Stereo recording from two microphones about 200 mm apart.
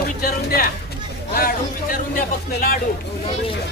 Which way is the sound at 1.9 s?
45° left (ahead or behind).